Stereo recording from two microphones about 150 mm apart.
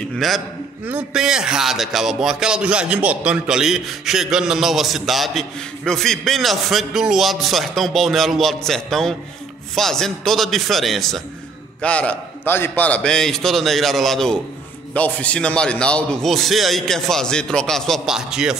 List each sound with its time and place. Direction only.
0.1 s a man's voice: centre (ahead or behind)